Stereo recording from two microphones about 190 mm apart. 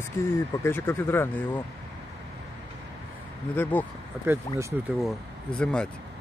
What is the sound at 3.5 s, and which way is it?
Speech, 10° left (ahead or behind).